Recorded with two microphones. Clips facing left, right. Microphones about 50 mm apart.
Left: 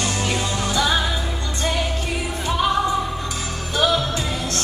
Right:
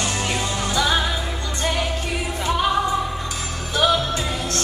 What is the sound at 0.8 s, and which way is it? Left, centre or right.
Music, centre.